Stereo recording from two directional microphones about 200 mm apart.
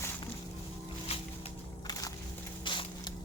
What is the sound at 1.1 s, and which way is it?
Music, 30° left (ahead or behind).